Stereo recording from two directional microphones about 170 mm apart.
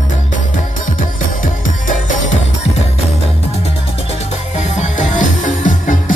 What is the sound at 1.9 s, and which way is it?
Music, 50° left (ahead or behind).